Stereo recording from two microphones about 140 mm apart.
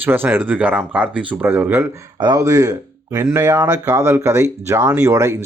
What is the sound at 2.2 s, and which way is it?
Speech, 25° right (ahead or behind).